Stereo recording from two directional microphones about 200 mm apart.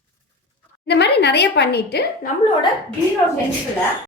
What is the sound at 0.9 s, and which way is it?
A woman's voice, 55° left (ahead or behind).